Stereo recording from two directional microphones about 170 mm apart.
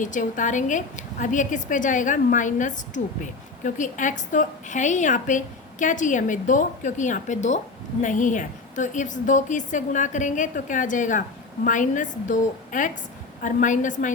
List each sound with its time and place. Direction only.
0.0 s a woman's voice: 50° left (ahead or behind)